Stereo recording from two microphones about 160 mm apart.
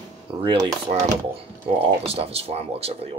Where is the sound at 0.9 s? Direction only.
40° right (ahead or behind).